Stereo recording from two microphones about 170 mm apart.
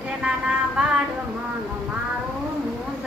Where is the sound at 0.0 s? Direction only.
5° right (ahead or behind).